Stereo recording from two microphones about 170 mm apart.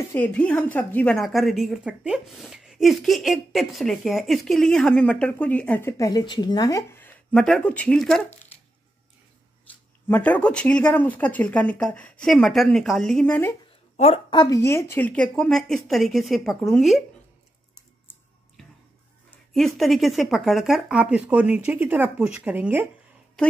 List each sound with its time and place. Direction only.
0.1 s a woman's voice: 10° left (ahead or behind)
10.0 s speech: 10° left (ahead or behind)
13.9 s a woman's voice: 40° left (ahead or behind)
14.3 s a woman's voice: 20° left (ahead or behind); by 17.0 s centre (ahead or behind)
19.3 s a woman's voice: centre (ahead or behind)